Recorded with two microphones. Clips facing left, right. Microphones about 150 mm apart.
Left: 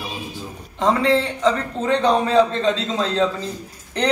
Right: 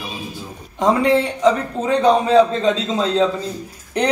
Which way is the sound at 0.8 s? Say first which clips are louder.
Right 2 dB; 15° right (ahead or behind).